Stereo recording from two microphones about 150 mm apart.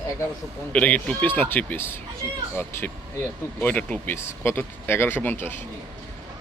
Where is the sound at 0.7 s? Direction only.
10° left (ahead or behind).